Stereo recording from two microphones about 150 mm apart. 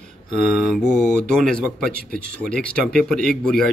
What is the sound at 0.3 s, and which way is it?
Mantra, 50° right (ahead or behind).